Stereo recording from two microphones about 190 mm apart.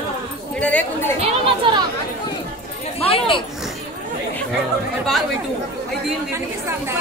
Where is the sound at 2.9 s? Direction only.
30° left (ahead or behind).